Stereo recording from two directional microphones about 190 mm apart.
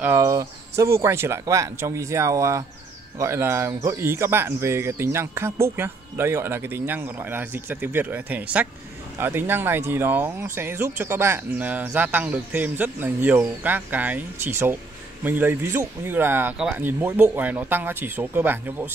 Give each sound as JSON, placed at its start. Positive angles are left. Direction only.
{"t": 0.0, "sound": "speech", "side_deg": -15}